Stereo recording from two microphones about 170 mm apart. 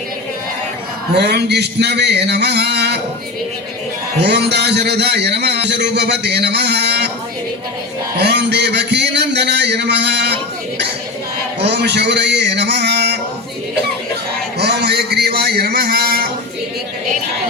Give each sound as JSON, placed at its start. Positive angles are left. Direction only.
{"t": 1.1, "sound": "a man's voice", "side_deg": -75}
{"t": 4.2, "sound": "a man's voice", "side_deg": -80}
{"t": 8.1, "sound": "a man's voice", "side_deg": -80}
{"t": 11.6, "sound": "a man's voice", "side_deg": -85}
{"t": 14.6, "sound": "a sound", "side_deg": -75}